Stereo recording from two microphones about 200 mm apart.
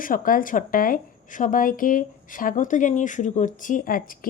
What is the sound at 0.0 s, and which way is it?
A woman's voice, 45° left (ahead or behind).